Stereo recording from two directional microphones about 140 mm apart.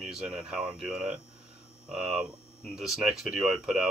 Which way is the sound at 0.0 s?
5° right (ahead or behind).